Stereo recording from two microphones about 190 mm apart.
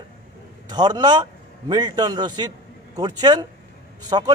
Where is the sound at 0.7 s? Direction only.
20° right (ahead or behind).